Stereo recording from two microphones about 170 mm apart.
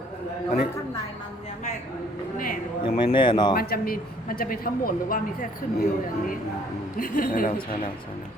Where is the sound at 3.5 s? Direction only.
65° left (ahead or behind).